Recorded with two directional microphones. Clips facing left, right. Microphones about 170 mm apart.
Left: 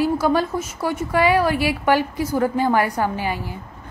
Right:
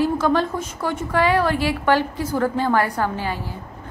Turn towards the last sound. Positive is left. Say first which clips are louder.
# left 1 dB
turn(degrees=10)  # may be behind; listen again after turning